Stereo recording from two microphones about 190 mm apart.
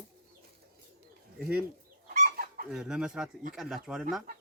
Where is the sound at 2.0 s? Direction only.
40° right (ahead or behind).